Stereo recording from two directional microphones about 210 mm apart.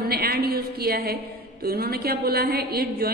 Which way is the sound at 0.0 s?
45° right (ahead or behind).